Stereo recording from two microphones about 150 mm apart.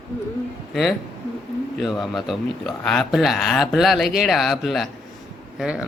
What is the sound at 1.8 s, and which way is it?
A woman's voice, centre (ahead or behind).